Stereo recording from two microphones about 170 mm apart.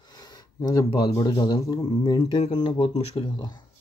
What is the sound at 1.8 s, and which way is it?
Speech, 30° left (ahead or behind).